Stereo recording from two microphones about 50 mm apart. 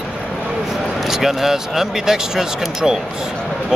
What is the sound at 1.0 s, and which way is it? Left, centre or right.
Speech, centre.